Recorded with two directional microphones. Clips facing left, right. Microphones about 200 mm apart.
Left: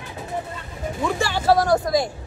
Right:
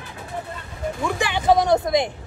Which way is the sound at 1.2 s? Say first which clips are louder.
Right 1 dB; 15° right (ahead or behind).